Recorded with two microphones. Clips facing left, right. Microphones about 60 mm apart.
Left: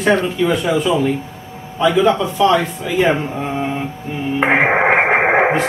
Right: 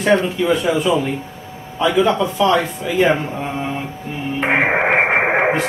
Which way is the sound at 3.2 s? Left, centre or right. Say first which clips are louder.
Left 2 dB; centre.